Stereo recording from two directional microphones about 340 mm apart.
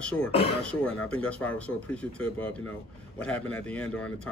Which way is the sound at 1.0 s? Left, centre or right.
Centre.